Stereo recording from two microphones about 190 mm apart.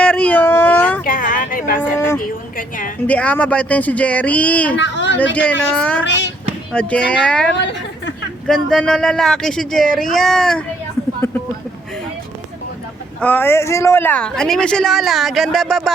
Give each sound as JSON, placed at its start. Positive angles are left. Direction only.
{"t": 0.0, "sound": "a sound", "side_deg": 5}
{"t": 1.0, "sound": "a sound", "side_deg": 45}
{"t": 2.0, "sound": "a sound", "side_deg": 15}
{"t": 2.6, "sound": "a woman's voice", "side_deg": 45}
{"t": 3.1, "sound": "speech", "side_deg": 5}
{"t": 4.8, "sound": "a sound", "side_deg": 70}
{"t": 5.2, "sound": "speech", "side_deg": 5}
{"t": 6.1, "sound": "a child's voice", "side_deg": 70}
{"t": 6.7, "sound": "speech", "side_deg": 5}
{"t": 7.6, "sound": "chatter", "side_deg": 70}
{"t": 8.4, "sound": "speech", "side_deg": 5}
{"t": 13.1, "sound": "speech", "side_deg": 10}